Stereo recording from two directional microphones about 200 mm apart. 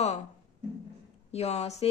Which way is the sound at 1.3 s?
30° left (ahead or behind).